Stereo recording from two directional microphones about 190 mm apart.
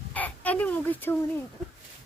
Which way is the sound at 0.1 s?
10° left (ahead or behind).